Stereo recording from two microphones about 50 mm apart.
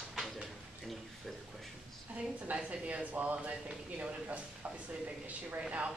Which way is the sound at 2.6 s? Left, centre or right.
Right.